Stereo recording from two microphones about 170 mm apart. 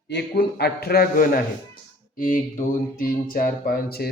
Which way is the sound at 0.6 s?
70° left (ahead or behind).